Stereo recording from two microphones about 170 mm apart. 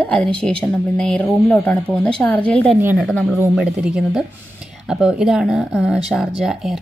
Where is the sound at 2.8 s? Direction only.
10° right (ahead or behind).